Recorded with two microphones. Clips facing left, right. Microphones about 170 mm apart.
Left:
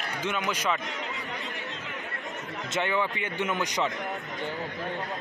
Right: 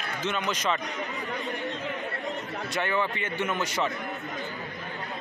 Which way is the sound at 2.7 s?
15° left (ahead or behind).